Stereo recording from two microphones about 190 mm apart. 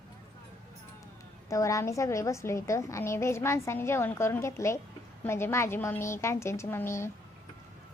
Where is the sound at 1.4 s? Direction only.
15° left (ahead or behind).